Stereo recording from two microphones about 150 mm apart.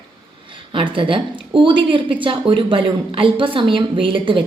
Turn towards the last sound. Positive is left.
turn(degrees=-35)  # may be behind; listen again after turning